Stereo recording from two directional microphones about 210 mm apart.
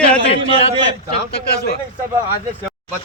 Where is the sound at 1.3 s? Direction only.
50° left (ahead or behind).